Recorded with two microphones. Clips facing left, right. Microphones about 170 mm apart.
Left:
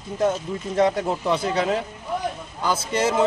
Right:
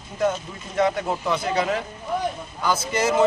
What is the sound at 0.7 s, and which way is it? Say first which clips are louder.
A man's voice: left 1 dB; 30° left (ahead or behind).